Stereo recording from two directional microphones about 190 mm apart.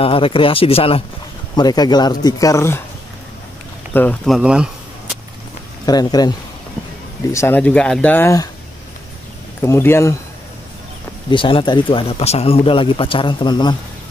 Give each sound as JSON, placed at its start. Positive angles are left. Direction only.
{"t": 0.0, "sound": "speech", "side_deg": 30}
{"t": 3.9, "sound": "speech", "side_deg": 10}
{"t": 4.4, "sound": "speech", "side_deg": -5}
{"t": 5.9, "sound": "speech", "side_deg": 20}
{"t": 7.3, "sound": "speech", "side_deg": 10}
{"t": 9.6, "sound": "speech", "side_deg": 10}
{"t": 11.2, "sound": "speech", "side_deg": 25}